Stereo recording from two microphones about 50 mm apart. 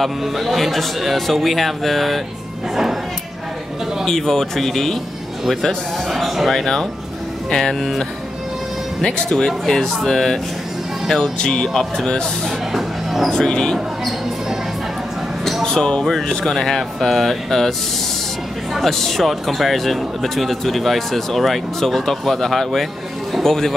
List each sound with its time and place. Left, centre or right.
0.0 s speech: centre
4.0 s speech: centre
9.0 s speech: centre
11.3 s speech: centre
12.7 s music: centre
13.3 s speech: centre
15.6 s speech: centre
18.8 s speech: centre